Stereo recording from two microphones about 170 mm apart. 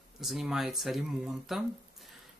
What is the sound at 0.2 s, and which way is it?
Speech, centre (ahead or behind).